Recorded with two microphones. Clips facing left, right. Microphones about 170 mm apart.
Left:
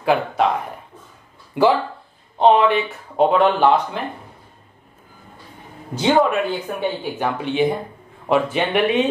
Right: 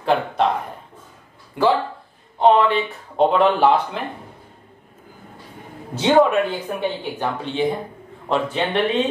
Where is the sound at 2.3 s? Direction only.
20° left (ahead or behind).